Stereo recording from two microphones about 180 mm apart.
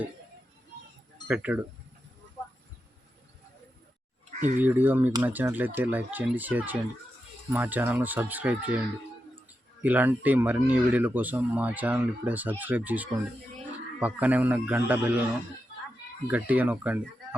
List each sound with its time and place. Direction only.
1.3 s speech: 5° right (ahead or behind)
4.3 s a sound: 45° right (ahead or behind)
4.6 s speech: 10° right (ahead or behind)
9.8 s speech: 10° right (ahead or behind)
16.2 s speech: 10° right (ahead or behind)